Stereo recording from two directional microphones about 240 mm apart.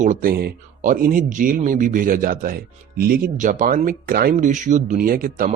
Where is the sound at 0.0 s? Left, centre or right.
Right.